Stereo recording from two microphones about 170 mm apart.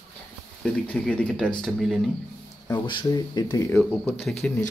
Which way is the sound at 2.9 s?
25° left (ahead or behind).